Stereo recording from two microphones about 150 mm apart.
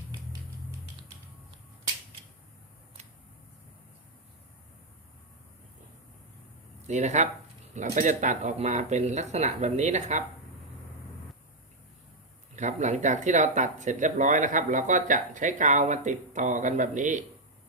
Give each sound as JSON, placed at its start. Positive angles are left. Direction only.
{"t": 6.8, "sound": "speech", "side_deg": -50}
{"t": 12.5, "sound": "speech", "side_deg": -50}